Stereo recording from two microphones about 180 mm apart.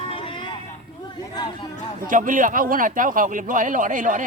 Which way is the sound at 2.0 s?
45° right (ahead or behind).